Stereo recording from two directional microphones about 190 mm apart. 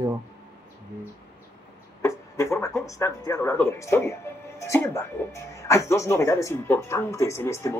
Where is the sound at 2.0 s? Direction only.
15° left (ahead or behind).